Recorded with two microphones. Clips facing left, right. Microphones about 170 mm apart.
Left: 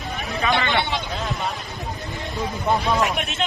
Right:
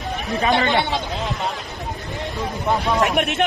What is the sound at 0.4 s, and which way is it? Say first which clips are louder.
Speech: right 3 dB; 35° right (ahead or behind).